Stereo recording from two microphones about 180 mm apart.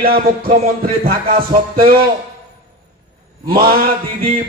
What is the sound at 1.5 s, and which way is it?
Music, 55° right (ahead or behind).